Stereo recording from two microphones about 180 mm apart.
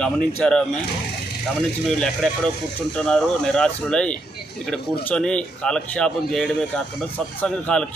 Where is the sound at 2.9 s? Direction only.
5° left (ahead or behind).